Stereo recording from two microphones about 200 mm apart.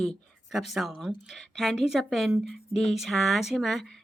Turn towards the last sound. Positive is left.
turn(degrees=0)  # may be behind; listen again after turning